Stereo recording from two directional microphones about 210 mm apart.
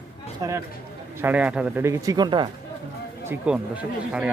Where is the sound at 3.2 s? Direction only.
5° right (ahead or behind).